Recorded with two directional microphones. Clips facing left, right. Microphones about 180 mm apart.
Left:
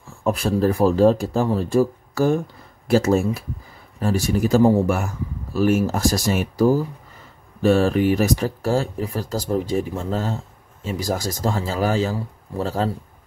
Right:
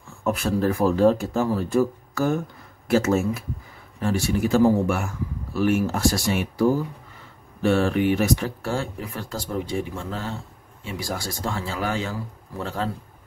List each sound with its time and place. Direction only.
0.2 s speech: 35° left (ahead or behind)